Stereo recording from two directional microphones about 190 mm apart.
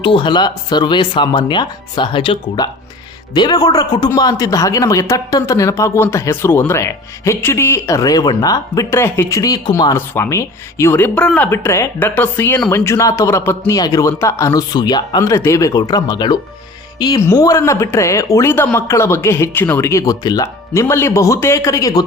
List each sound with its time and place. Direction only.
0.0 s a man's voice: 25° left (ahead or behind)